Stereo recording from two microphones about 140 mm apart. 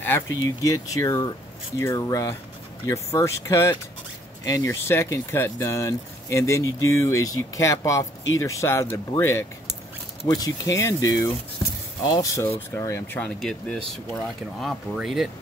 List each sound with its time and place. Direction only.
0.4 s speech: 25° left (ahead or behind)
13.2 s speech: 5° left (ahead or behind)